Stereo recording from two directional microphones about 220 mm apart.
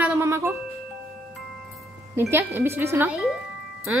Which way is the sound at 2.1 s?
10° right (ahead or behind).